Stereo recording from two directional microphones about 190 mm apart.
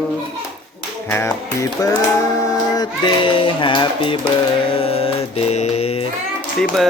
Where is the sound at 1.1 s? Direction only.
10° left (ahead or behind).